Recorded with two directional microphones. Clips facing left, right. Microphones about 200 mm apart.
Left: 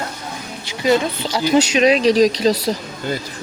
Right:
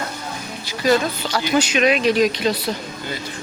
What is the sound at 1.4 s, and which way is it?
Speech, 30° left (ahead or behind).